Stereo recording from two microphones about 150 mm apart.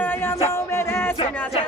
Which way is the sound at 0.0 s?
15° left (ahead or behind).